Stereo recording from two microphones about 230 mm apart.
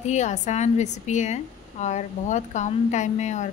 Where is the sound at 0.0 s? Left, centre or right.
Left.